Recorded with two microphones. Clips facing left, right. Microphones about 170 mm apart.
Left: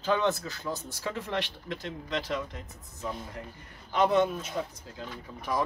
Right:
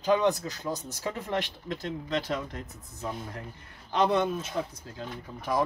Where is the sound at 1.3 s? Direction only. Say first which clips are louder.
Right 2 dB; 40° right (ahead or behind).